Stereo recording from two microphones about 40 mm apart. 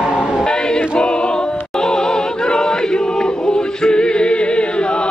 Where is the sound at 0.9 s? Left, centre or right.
Left.